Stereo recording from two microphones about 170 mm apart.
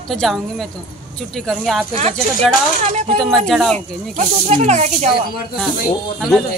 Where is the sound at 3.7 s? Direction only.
45° right (ahead or behind).